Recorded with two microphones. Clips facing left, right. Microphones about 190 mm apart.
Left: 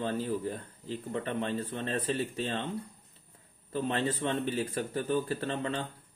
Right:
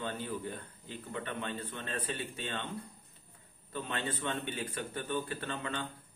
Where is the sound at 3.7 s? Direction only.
35° left (ahead or behind).